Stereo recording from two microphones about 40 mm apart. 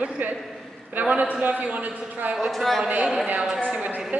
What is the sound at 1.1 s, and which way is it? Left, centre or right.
A man's voice, right.